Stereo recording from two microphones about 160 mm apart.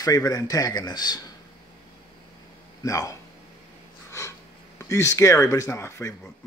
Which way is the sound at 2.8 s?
20° left (ahead or behind).